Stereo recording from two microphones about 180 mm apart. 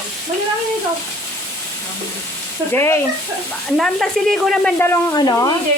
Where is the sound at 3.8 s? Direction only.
Centre (ahead or behind).